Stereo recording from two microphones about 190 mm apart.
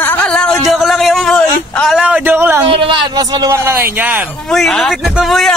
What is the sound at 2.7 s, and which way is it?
Speech, 25° right (ahead or behind).